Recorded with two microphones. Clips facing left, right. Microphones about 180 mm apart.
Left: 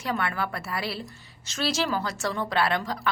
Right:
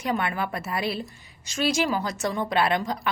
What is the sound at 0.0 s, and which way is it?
A woman's voice, 20° right (ahead or behind).